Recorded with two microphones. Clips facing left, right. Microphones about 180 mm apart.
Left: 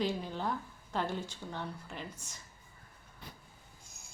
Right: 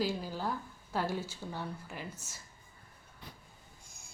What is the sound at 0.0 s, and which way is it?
Speech, 5° right (ahead or behind).